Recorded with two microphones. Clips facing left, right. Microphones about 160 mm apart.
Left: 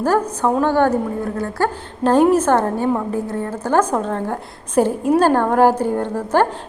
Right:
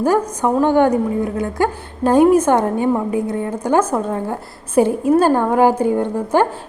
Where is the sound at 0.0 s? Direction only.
10° right (ahead or behind).